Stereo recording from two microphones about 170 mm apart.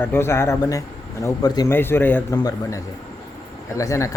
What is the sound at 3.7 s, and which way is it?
Speech, 20° left (ahead or behind).